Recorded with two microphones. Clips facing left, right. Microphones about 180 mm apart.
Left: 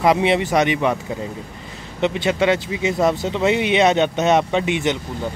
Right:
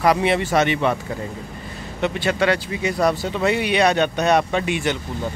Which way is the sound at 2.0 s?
20° left (ahead or behind).